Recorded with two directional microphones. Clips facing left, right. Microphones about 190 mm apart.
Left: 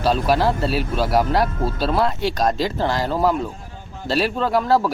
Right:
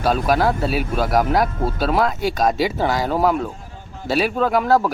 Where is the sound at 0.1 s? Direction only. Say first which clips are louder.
Right 1 dB; centre (ahead or behind).